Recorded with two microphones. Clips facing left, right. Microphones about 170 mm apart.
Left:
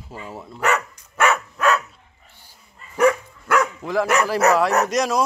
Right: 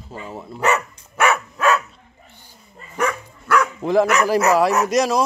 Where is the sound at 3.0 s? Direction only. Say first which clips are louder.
Left 6 dB; 15° left (ahead or behind).